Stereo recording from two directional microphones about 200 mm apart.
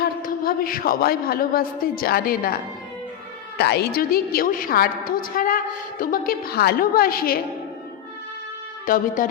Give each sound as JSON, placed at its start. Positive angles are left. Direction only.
{"t": 0.0, "sound": "a woman's voice", "side_deg": 45}
{"t": 3.6, "sound": "a woman's voice", "side_deg": 55}
{"t": 8.9, "sound": "a woman's voice", "side_deg": 45}